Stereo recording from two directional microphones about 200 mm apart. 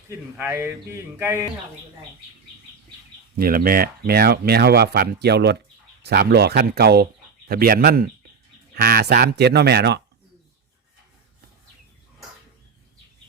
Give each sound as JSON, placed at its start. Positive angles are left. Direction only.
{"t": 0.1, "sound": "speech", "side_deg": -10}
{"t": 3.3, "sound": "speech", "side_deg": -45}